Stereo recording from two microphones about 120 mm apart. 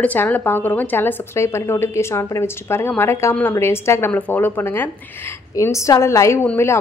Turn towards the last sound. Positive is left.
turn(degrees=20)  # may be behind; listen again after turning